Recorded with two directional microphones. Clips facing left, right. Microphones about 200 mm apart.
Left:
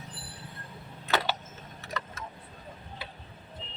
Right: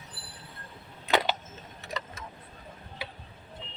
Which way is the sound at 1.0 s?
15° right (ahead or behind).